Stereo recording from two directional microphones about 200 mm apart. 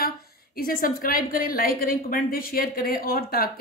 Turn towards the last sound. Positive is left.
turn(degrees=45)  # may be behind; listen again after turning